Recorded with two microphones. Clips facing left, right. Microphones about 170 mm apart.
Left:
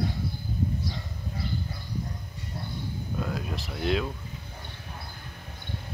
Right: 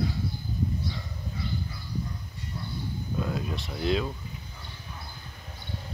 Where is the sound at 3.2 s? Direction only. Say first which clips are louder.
Right 1 dB; centre (ahead or behind).